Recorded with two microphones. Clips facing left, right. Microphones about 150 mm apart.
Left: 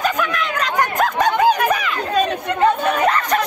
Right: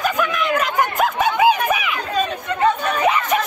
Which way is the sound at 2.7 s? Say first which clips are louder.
Left 3 dB; 55° left (ahead or behind).